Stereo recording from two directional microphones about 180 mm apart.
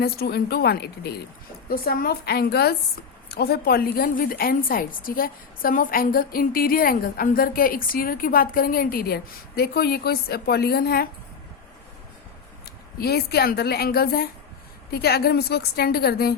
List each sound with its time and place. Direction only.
0.0 s a woman's voice: 60° left (ahead or behind)
13.0 s a woman's voice: 60° left (ahead or behind)